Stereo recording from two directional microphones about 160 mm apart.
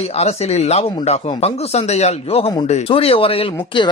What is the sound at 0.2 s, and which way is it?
Speech, 40° left (ahead or behind).